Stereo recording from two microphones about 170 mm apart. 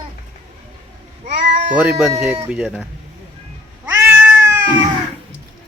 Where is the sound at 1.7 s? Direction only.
10° right (ahead or behind).